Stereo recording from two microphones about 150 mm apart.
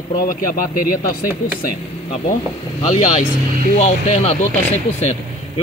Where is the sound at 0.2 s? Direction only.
70° left (ahead or behind).